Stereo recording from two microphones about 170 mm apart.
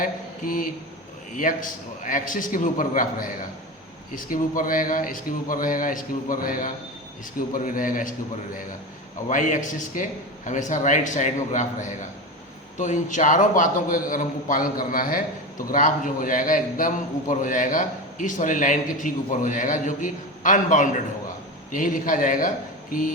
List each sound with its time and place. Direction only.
0.0 s a sound: 55° left (ahead or behind)
1.3 s a man's voice: 50° left (ahead or behind)
9.3 s a man's voice: 50° left (ahead or behind)